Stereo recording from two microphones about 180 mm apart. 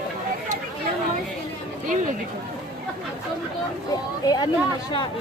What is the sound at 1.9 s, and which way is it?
Speech, 45° right (ahead or behind).